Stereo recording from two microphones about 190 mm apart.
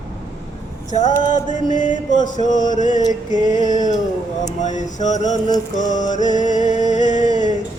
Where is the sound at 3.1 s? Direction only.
20° right (ahead or behind).